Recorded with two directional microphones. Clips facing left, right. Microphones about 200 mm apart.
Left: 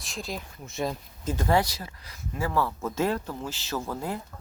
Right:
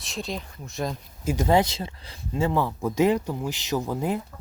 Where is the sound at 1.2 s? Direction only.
15° right (ahead or behind).